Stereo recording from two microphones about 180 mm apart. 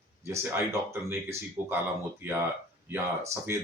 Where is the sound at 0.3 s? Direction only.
15° right (ahead or behind).